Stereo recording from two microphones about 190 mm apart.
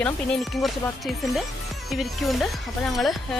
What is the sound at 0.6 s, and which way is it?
A woman's voice, centre (ahead or behind).